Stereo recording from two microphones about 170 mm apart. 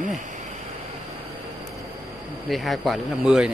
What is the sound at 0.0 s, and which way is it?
Vehicle, 50° right (ahead or behind).